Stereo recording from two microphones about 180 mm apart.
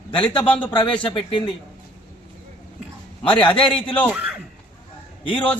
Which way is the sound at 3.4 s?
25° left (ahead or behind).